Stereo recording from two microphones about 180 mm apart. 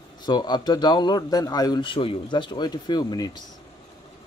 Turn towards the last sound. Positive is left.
turn(degrees=25)  # may be behind; listen again after turning